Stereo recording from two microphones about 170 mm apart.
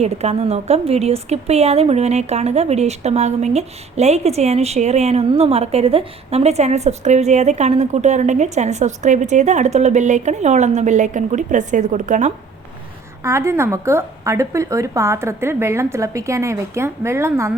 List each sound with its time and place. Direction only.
0.0 s a woman's voice: 40° right (ahead or behind)
13.2 s a woman's voice: 15° right (ahead or behind)